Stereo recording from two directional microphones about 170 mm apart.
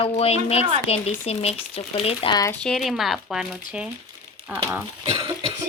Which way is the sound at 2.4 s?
10° left (ahead or behind).